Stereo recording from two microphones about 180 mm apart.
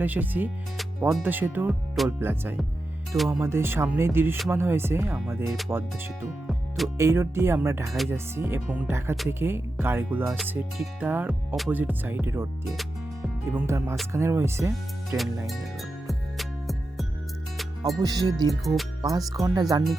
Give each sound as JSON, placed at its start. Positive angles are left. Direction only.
{"t": 0.0, "sound": "music", "side_deg": -10}
{"t": 6.5, "sound": "music", "side_deg": 0}
{"t": 6.9, "sound": "music", "side_deg": -15}
{"t": 13.5, "sound": "music", "side_deg": -15}
{"t": 15.4, "sound": "music", "side_deg": 0}
{"t": 17.8, "sound": "speech", "side_deg": -20}
{"t": 18.6, "sound": "speech", "side_deg": 0}
{"t": 19.0, "sound": "speech", "side_deg": -20}